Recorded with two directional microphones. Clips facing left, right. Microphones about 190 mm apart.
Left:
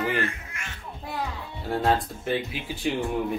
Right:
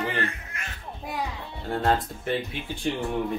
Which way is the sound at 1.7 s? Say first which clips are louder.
Left 1 dB; 5° left (ahead or behind).